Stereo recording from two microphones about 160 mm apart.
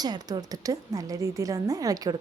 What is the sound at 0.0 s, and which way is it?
A woman's voice, 25° right (ahead or behind).